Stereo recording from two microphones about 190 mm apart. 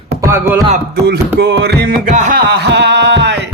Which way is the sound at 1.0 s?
60° right (ahead or behind).